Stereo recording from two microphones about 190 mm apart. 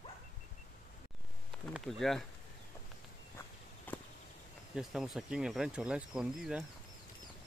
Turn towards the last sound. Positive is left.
turn(degrees=-5)  # may be behind; listen again after turning